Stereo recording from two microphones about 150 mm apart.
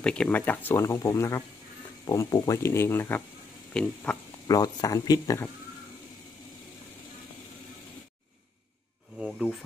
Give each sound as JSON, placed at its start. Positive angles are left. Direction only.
{"t": 0.0, "sound": "speech", "side_deg": 5}
{"t": 4.5, "sound": "speech", "side_deg": 25}
{"t": 9.2, "sound": "a sound", "side_deg": 0}